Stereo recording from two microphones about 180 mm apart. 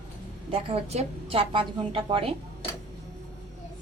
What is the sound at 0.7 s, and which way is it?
A woman's voice, 35° right (ahead or behind).